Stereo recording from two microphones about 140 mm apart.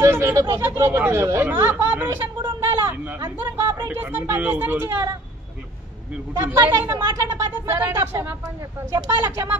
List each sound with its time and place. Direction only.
0.0 s speech: 20° right (ahead or behind)
6.3 s speech: 20° right (ahead or behind)